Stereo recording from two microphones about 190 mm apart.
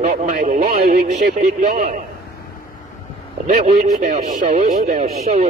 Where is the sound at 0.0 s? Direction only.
35° right (ahead or behind).